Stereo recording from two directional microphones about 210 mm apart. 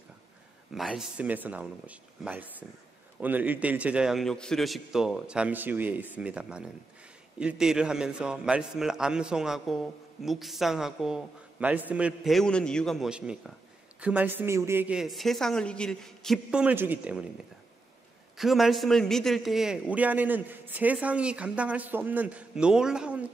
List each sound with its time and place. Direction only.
0.7 s a man's voice: centre (ahead or behind)
18.4 s a man's voice: centre (ahead or behind)